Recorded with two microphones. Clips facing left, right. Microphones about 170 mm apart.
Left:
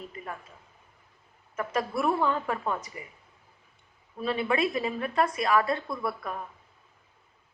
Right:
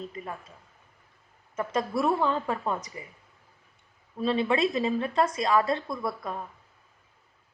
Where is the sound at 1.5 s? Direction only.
20° right (ahead or behind).